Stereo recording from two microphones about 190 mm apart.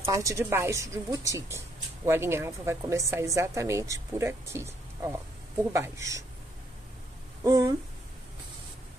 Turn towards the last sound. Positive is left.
turn(degrees=-15)  # may be behind; listen again after turning